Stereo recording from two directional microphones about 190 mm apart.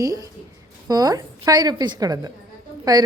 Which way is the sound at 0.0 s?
20° right (ahead or behind).